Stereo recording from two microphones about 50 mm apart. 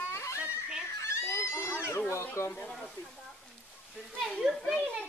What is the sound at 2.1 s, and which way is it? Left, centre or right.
Speech, left.